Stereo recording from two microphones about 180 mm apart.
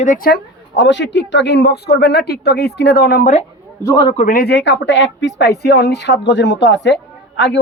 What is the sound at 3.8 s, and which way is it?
Speech, 20° left (ahead or behind).